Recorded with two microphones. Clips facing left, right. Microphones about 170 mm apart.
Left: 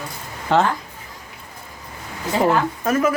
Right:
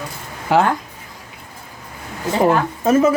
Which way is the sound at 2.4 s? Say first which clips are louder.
Right 3 dB; 20° right (ahead or behind).